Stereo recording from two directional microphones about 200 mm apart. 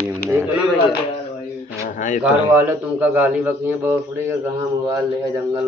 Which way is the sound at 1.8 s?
40° left (ahead or behind).